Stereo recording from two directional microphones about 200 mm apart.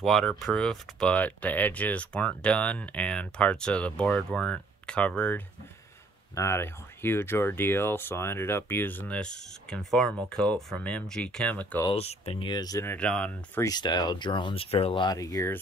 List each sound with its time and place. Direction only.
0.0 s speech: 5° left (ahead or behind)
11.8 s speech: 30° left (ahead or behind); by 13.7 s 5° left (ahead or behind)
13.7 s speech: 20° left (ahead or behind)